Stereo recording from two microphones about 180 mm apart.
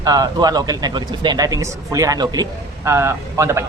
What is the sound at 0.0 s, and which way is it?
A man's voice, 20° right (ahead or behind).